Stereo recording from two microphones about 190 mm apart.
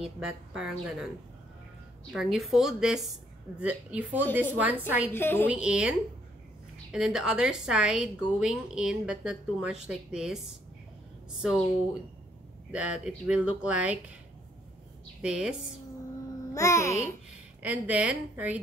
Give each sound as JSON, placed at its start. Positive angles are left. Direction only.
{"t": 0.0, "sound": "a woman's voice", "side_deg": -5}
{"t": 2.1, "sound": "a woman's voice", "side_deg": 0}
{"t": 5.1, "sound": "a woman's voice", "side_deg": 10}
{"t": 5.5, "sound": "a woman's voice", "side_deg": -5}
{"t": 12.7, "sound": "a woman's voice", "side_deg": -5}
{"t": 15.2, "sound": "a woman's voice", "side_deg": -5}
{"t": 16.5, "sound": "a woman's voice", "side_deg": 15}
{"t": 17.6, "sound": "a woman's voice", "side_deg": -5}